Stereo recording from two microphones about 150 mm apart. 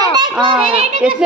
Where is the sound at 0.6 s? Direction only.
45° right (ahead or behind).